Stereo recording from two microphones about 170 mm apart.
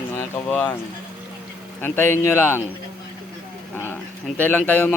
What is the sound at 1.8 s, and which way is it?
Speech, 15° left (ahead or behind).